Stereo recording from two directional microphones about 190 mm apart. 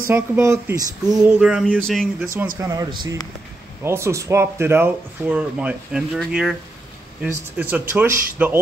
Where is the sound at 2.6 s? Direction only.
15° right (ahead or behind).